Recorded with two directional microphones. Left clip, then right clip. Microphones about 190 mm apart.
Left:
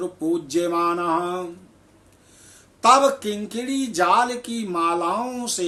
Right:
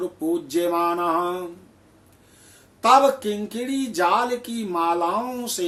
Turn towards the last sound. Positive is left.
turn(degrees=15)  # may be behind; listen again after turning